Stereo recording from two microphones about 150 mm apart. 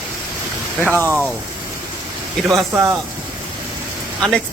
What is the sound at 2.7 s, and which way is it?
Speech, 15° right (ahead or behind).